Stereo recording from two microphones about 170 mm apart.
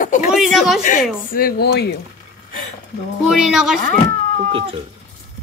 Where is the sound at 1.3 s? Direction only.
65° left (ahead or behind).